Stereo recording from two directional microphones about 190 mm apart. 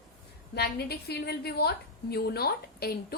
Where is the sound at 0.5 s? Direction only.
60° left (ahead or behind).